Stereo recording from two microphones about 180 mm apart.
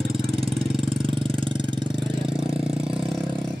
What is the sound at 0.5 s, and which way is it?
Vehicle, centre (ahead or behind).